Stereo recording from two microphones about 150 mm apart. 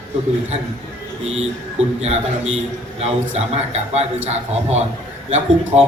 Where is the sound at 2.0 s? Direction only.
45° right (ahead or behind).